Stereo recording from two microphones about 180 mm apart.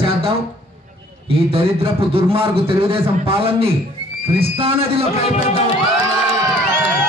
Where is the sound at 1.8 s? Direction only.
30° right (ahead or behind).